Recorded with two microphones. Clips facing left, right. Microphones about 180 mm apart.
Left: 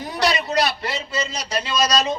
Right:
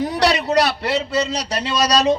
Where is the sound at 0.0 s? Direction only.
75° right (ahead or behind).